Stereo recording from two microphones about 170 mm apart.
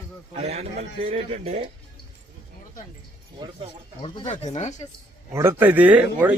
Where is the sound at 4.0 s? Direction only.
35° left (ahead or behind).